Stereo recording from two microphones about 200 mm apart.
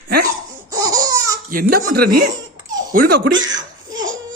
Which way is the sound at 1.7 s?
50° right (ahead or behind).